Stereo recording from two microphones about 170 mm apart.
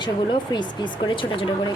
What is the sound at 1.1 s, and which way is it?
Speech, 30° left (ahead or behind).